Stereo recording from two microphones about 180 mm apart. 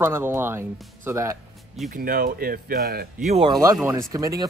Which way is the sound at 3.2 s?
30° right (ahead or behind).